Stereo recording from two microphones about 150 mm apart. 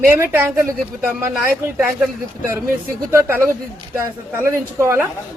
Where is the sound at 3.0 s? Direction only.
15° right (ahead or behind).